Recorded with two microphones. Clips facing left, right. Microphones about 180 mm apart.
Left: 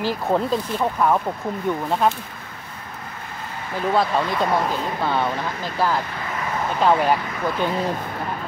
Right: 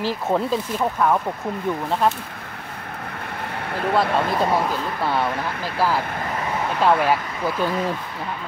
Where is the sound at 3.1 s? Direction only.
65° right (ahead or behind).